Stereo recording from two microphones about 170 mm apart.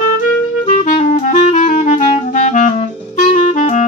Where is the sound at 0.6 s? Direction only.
40° left (ahead or behind).